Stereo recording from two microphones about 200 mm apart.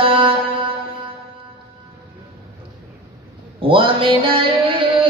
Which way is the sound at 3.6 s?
25° right (ahead or behind).